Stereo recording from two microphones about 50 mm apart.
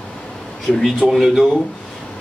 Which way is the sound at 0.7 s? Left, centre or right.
Centre.